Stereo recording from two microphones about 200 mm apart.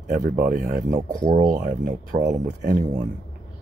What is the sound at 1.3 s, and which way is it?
Speech, 40° right (ahead or behind).